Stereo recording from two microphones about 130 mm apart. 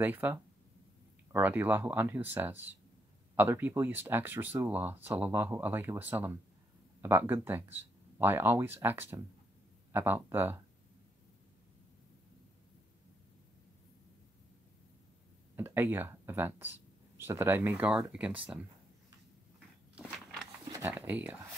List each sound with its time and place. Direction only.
0.0 s speech: 15° right (ahead or behind)
15.5 s speech: 15° right (ahead or behind)
20.1 s walk: 5° left (ahead or behind)
20.9 s speech: 10° right (ahead or behind)